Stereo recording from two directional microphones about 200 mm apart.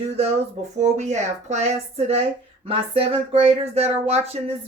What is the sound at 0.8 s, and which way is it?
Speech, 35° right (ahead or behind).